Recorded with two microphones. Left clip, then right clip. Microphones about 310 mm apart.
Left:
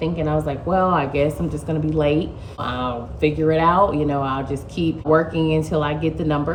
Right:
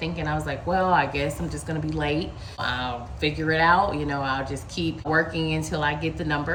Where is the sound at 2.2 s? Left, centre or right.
Left.